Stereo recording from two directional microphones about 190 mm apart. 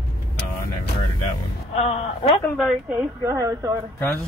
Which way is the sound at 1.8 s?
35° left (ahead or behind).